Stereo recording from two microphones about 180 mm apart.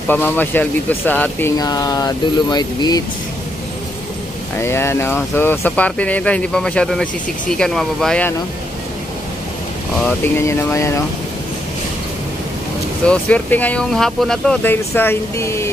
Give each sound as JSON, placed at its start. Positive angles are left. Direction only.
{"t": 0.1, "sound": "speech", "side_deg": 10}
{"t": 1.6, "sound": "speech", "side_deg": 20}
{"t": 4.6, "sound": "speech", "side_deg": 15}
{"t": 10.0, "sound": "speech", "side_deg": 10}
{"t": 13.0, "sound": "speech", "side_deg": 5}